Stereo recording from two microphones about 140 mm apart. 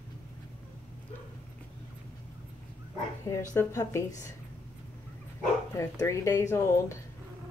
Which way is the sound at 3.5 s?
20° left (ahead or behind).